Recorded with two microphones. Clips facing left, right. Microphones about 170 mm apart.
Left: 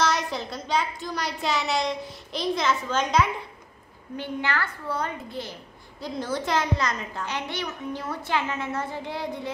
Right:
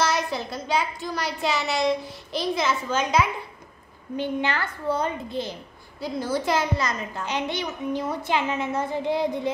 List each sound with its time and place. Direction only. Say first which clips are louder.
0.0 s a child's voice: right 1 dB; 5° right (ahead or behind)
4.2 s a child's voice: right 3 dB; 20° right (ahead or behind)
5.9 s a child's voice: right 3 dB; 5° right (ahead or behind)
7.2 s a child's voice: right 5 dB; 20° right (ahead or behind)